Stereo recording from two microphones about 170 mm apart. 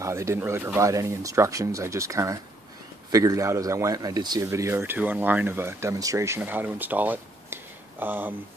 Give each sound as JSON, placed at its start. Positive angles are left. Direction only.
{"t": 0.0, "sound": "a man's voice", "side_deg": -15}